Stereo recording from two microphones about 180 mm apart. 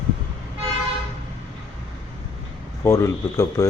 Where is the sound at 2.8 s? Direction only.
15° left (ahead or behind).